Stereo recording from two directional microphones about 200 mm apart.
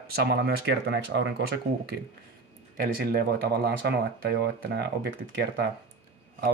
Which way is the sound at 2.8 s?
50° right (ahead or behind).